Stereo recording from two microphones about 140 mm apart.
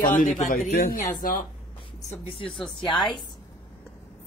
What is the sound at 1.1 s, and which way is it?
Speech, 90° left.